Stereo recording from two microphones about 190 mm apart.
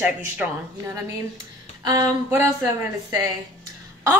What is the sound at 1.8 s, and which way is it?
A woman's voice, 20° right (ahead or behind).